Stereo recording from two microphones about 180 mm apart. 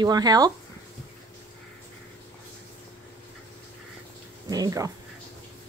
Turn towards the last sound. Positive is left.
turn(degrees=-20)  # may be behind; listen again after turning